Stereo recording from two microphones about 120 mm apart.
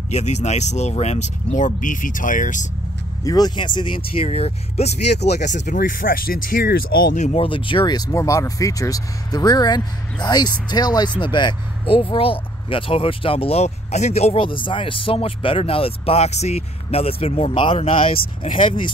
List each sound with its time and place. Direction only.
0.1 s speech: 70° left (ahead or behind); by 2.7 s 90° left
3.3 s speech: 35° left (ahead or behind); by 5.8 s 85° left
7.3 s speech: 45° left (ahead or behind)